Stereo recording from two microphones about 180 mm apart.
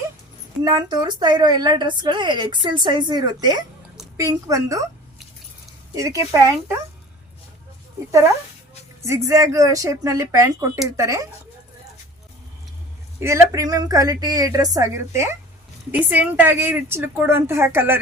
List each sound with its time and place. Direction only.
0.6 s a woman's voice: 20° right (ahead or behind)
5.9 s a woman's voice: 20° right (ahead or behind)
9.0 s a woman's voice: 15° right (ahead or behind)
13.1 s a woman's voice: 15° right (ahead or behind)